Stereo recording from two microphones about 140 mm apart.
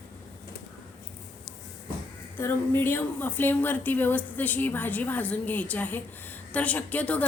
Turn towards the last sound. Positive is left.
turn(degrees=10)  # may be behind; listen again after turning